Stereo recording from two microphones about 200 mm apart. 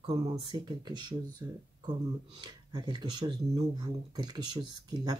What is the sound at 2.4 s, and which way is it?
Speech, 20° right (ahead or behind).